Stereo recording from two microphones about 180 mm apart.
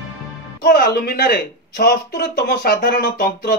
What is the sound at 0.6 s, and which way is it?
Speech, 60° left (ahead or behind).